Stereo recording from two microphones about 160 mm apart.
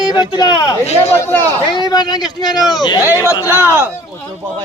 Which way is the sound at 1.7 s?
25° left (ahead or behind).